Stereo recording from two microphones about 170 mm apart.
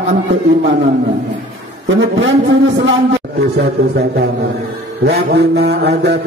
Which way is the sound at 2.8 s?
85° right.